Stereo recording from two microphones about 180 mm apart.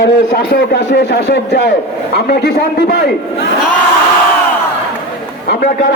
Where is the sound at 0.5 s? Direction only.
65° left (ahead or behind).